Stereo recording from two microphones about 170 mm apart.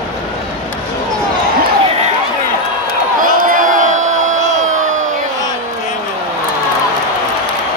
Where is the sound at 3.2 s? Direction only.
55° right (ahead or behind).